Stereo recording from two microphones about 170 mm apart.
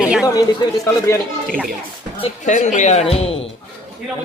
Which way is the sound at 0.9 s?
20° left (ahead or behind).